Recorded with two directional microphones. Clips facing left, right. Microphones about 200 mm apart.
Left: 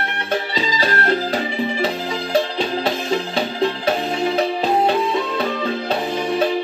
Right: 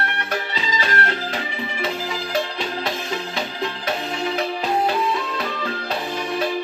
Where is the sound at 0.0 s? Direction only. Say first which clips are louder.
Left 3 dB; 30° left (ahead or behind).